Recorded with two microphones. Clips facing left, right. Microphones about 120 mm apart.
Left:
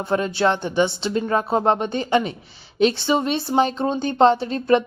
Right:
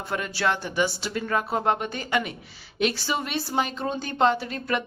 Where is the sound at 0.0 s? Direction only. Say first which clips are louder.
Left 7 dB; 25° left (ahead or behind).